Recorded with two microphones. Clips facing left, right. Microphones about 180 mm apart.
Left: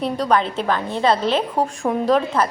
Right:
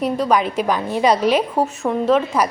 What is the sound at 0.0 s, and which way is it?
A woman's voice, 10° right (ahead or behind).